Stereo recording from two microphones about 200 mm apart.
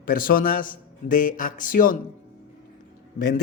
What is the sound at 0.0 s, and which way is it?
Speech, 45° left (ahead or behind).